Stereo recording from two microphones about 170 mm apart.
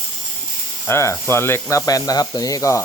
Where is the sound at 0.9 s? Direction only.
15° left (ahead or behind).